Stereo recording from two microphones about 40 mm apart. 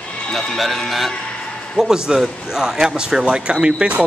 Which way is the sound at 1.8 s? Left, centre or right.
Centre.